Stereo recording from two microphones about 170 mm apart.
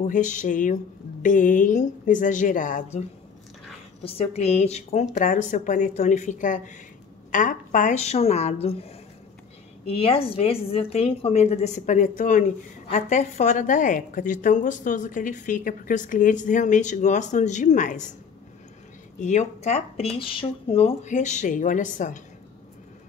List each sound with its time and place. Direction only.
0.0 s a woman's voice: 45° left (ahead or behind)
19.1 s a woman's voice: 45° left (ahead or behind)